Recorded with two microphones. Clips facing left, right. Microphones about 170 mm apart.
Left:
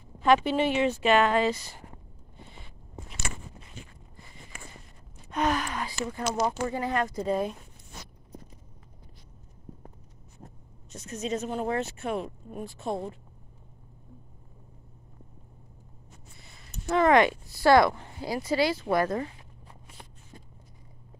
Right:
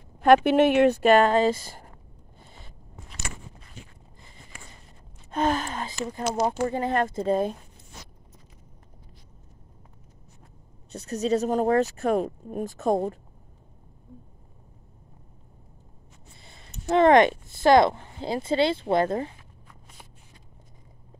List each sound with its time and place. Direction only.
0.2 s speech: 60° right (ahead or behind)
5.3 s speech: 30° right (ahead or behind)
10.9 s speech: 35° right (ahead or behind)
16.3 s speech: 25° right (ahead or behind)